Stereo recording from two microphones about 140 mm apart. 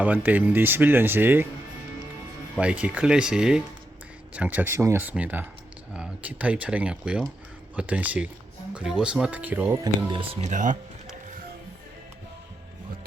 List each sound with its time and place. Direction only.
0.0 s speech: 10° right (ahead or behind)
2.6 s speech: 10° right (ahead or behind)
9.8 s speech: 35° right (ahead or behind)
10.4 s speech: 65° right (ahead or behind)